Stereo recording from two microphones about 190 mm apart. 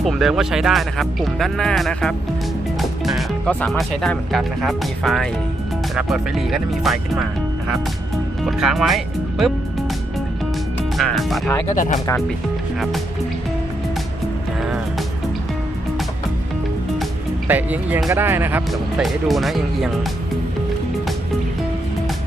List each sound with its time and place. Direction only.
0.0 s speech: centre (ahead or behind)
8.4 s speech: centre (ahead or behind)
10.9 s music: centre (ahead or behind)
11.7 s speech: 40° left (ahead or behind)
17.5 s speech: 10° right (ahead or behind)